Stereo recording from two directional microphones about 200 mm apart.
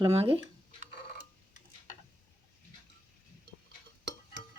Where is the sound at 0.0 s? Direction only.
30° right (ahead or behind).